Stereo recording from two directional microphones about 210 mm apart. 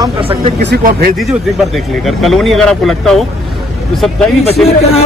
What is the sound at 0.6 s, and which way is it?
Speech, 50° right (ahead or behind).